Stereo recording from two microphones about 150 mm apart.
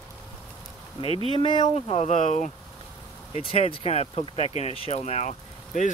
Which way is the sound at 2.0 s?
50° left (ahead or behind).